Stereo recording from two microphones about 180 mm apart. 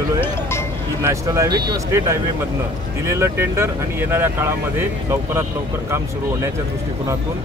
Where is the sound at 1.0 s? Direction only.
15° right (ahead or behind).